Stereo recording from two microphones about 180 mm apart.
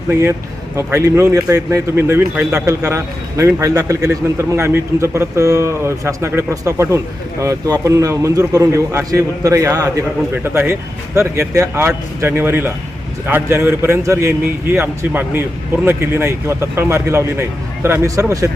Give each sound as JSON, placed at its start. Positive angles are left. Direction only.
{"t": 0.1, "sound": "a man's voice", "side_deg": -10}